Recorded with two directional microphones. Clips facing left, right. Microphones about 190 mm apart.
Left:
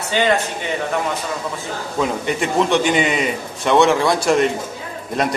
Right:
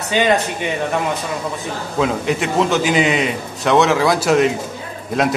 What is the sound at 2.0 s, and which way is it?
A man's voice, centre (ahead or behind).